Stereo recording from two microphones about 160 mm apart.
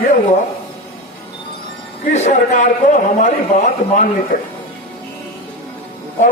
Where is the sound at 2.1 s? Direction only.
45° left (ahead or behind).